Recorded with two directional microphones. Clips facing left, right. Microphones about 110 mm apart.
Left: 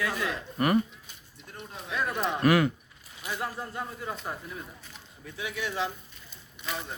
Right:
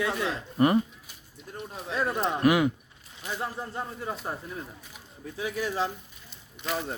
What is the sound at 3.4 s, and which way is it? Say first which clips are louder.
Speech: right 1 dB; 25° right (ahead or behind).